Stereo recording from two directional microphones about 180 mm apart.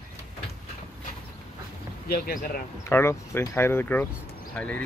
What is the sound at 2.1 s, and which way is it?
Speech, 55° left (ahead or behind).